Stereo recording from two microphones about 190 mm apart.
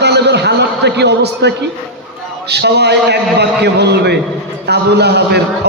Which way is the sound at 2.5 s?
60° right (ahead or behind).